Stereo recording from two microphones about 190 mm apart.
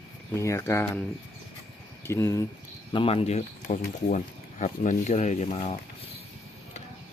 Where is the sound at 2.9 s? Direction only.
30° left (ahead or behind).